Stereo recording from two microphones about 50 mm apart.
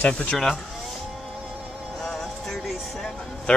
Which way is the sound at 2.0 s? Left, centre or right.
Centre.